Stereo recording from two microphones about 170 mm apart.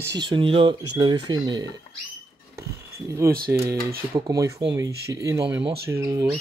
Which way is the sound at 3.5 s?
20° right (ahead or behind).